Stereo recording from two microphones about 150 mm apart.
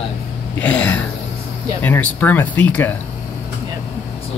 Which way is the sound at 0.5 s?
10° left (ahead or behind).